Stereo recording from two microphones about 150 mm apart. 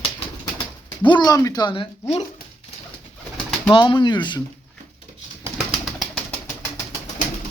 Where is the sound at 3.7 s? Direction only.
30° left (ahead or behind).